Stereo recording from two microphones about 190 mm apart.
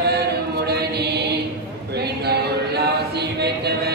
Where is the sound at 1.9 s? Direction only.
60° right (ahead or behind).